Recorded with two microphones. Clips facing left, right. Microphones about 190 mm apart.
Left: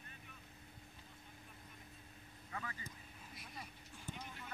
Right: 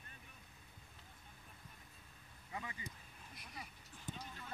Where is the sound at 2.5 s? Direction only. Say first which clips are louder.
Even; 20° right (ahead or behind).